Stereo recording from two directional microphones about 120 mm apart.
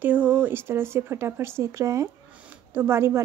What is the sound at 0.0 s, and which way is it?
A woman's voice, 15° right (ahead or behind).